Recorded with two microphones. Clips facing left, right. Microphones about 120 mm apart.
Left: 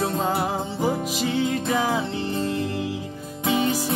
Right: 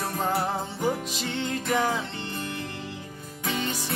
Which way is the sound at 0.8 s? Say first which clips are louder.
Left 4 dB; 5° left (ahead or behind).